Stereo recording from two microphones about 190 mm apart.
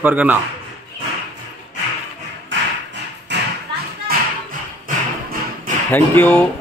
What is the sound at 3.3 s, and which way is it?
Thump, 65° right (ahead or behind).